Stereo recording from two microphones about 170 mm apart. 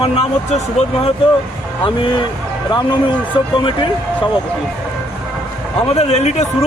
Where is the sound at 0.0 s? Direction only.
35° left (ahead or behind).